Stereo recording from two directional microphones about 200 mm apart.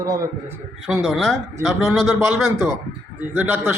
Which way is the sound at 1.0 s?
Centre (ahead or behind).